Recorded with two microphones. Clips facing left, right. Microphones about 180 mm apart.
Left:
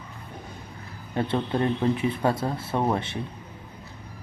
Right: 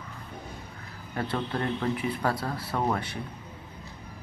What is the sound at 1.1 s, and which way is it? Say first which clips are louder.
Speech: left 5 dB; 25° left (ahead or behind).